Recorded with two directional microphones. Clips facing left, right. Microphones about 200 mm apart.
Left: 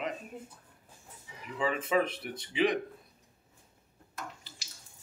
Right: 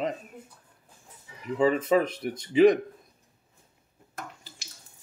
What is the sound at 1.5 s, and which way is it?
Speech, 40° right (ahead or behind).